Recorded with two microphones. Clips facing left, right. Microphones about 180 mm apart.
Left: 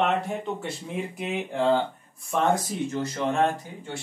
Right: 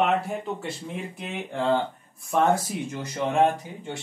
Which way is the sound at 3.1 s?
15° right (ahead or behind).